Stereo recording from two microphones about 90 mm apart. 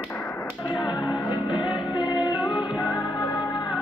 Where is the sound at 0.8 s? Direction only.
50° left (ahead or behind).